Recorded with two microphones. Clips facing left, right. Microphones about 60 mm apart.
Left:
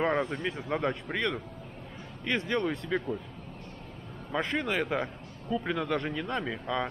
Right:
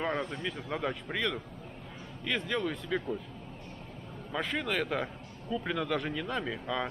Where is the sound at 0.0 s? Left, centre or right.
Centre.